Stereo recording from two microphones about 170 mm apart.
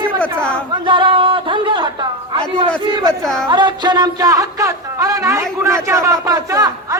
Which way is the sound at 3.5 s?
25° right (ahead or behind).